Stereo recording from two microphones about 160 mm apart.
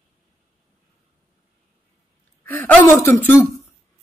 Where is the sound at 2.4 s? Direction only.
10° left (ahead or behind).